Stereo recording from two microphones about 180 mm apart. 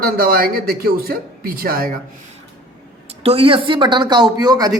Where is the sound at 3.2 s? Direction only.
30° right (ahead or behind).